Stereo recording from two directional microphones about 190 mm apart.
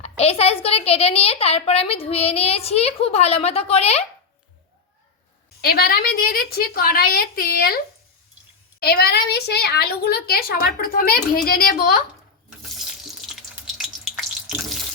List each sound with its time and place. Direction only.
0.0 s a woman's voice: 30° left (ahead or behind)
5.6 s a woman's voice: 55° left (ahead or behind)
8.8 s a woman's voice: 55° left (ahead or behind)
13.7 s frying: 5° right (ahead or behind)